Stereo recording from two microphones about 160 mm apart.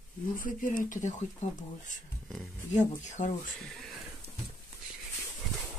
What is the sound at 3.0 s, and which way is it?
Speech, 50° left (ahead or behind).